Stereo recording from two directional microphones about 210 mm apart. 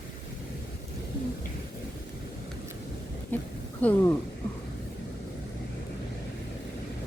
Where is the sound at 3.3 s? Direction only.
10° left (ahead or behind).